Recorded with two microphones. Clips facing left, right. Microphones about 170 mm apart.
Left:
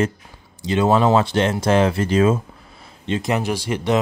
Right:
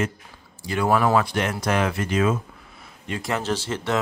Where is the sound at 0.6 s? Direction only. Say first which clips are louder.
Left 4 dB; 20° left (ahead or behind).